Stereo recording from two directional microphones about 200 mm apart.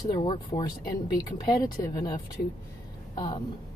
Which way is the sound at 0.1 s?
20° left (ahead or behind).